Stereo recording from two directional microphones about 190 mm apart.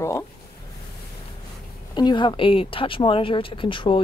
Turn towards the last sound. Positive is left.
turn(degrees=25)  # may be behind; listen again after turning